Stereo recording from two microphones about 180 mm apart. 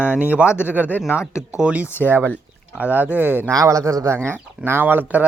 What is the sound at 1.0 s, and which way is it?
Speech, 15° left (ahead or behind).